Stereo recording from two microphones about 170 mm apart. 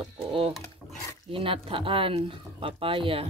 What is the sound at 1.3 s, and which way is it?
Speech, 30° right (ahead or behind).